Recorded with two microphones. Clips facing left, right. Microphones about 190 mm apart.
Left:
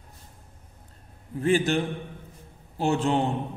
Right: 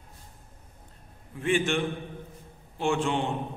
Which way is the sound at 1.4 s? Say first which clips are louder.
Left 3 dB; 35° left (ahead or behind).